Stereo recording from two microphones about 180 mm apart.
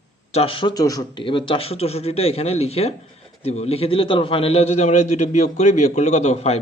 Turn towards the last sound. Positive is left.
turn(degrees=35)  # may be behind; listen again after turning